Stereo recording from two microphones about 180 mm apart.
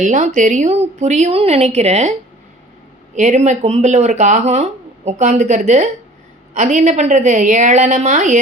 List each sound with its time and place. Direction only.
0.0 s speech: 40° right (ahead or behind)
3.2 s speech: 40° right (ahead or behind)